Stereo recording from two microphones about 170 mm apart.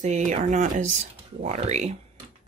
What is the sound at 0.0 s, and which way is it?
Speech, 45° right (ahead or behind).